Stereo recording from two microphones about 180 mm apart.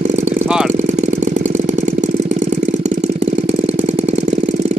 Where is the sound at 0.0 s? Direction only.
40° right (ahead or behind).